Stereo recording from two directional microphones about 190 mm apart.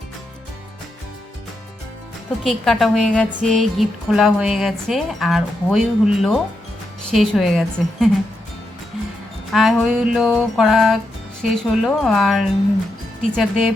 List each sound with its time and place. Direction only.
2.4 s a woman's voice: centre (ahead or behind)
9.5 s a woman's voice: centre (ahead or behind)